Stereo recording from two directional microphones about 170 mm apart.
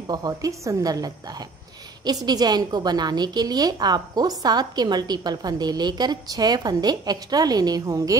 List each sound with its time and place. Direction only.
0.0 s a woman's voice: 25° right (ahead or behind)
2.2 s a woman's voice: 25° right (ahead or behind)